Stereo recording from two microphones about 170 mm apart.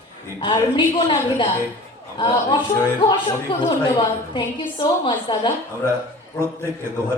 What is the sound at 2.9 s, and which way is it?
A woman's voice, 30° left (ahead or behind).